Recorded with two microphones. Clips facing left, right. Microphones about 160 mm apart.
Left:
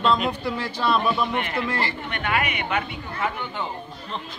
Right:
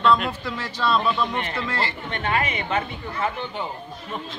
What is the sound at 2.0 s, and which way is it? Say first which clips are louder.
Speech: right 1 dB; 30° right (ahead or behind).